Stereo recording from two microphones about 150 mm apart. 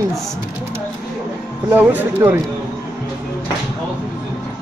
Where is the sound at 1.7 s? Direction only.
10° right (ahead or behind).